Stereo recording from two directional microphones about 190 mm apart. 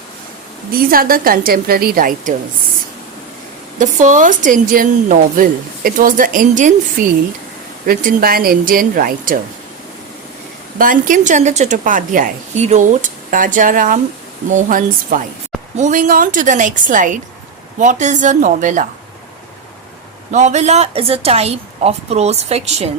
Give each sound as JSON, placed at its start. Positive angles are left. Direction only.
{"t": 0.7, "sound": "a woman's voice", "side_deg": -50}
{"t": 3.8, "sound": "a woman's voice", "side_deg": -40}
{"t": 7.9, "sound": "a woman's voice", "side_deg": -50}
{"t": 10.8, "sound": "a woman's voice", "side_deg": -45}
{"t": 20.3, "sound": "a woman's voice", "side_deg": -40}